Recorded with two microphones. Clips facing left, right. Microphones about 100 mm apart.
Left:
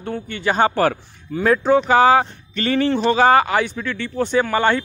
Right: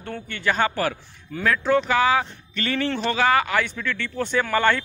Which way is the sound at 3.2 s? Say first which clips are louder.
Left 5 dB; 35° left (ahead or behind).